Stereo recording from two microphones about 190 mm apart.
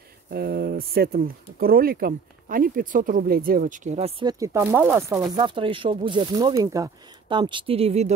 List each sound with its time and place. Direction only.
0.3 s speech: 55° right (ahead or behind); by 4.1 s 40° right (ahead or behind)
4.2 s speech: 20° right (ahead or behind)